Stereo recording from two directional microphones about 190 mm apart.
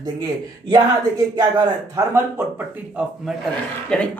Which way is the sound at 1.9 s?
15° right (ahead or behind).